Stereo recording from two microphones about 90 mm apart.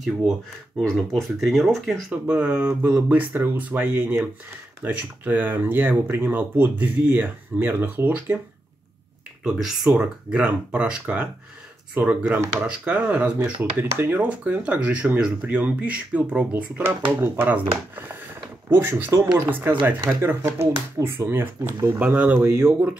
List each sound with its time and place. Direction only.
0.7 s speech: 5° left (ahead or behind)
2.2 s speech: 10° right (ahead or behind)
2.6 s speech: 25° right (ahead or behind)
9.4 s speech: 5° right (ahead or behind)